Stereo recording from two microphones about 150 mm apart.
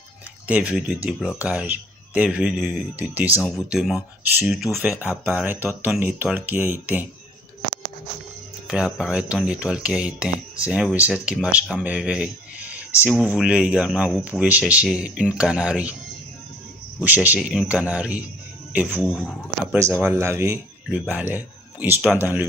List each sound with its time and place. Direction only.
0.4 s speech: 10° right (ahead or behind)
8.6 s speech: 5° right (ahead or behind)
17.0 s speech: 10° right (ahead or behind)
19.1 s speech: 5° left (ahead or behind)
19.7 s speech: 15° right (ahead or behind)